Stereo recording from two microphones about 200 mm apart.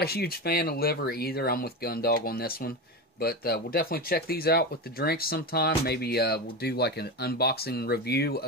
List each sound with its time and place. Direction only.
0.0 s speech: 50° left (ahead or behind)